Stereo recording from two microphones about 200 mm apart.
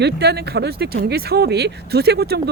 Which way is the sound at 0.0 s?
55° right (ahead or behind).